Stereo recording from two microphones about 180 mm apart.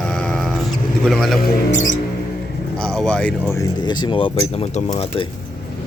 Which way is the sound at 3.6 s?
25° left (ahead or behind).